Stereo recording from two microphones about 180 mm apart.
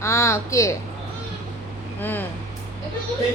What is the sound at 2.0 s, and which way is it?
Speech, 10° left (ahead or behind).